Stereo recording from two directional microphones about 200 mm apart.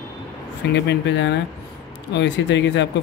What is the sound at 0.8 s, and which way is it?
Speech, 60° left (ahead or behind).